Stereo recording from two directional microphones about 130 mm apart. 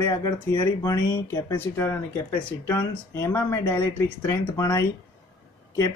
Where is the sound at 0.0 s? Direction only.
20° left (ahead or behind).